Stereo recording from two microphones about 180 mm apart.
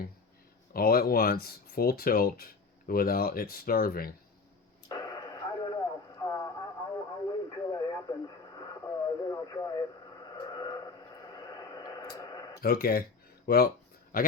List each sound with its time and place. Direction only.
0.7 s speech: 55° left (ahead or behind)
4.9 s radio: 20° left (ahead or behind)
10.2 s a sound: 20° left (ahead or behind)
12.6 s speech: 55° left (ahead or behind)